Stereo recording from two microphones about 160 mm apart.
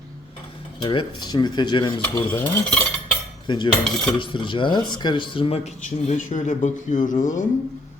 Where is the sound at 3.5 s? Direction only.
30° left (ahead or behind).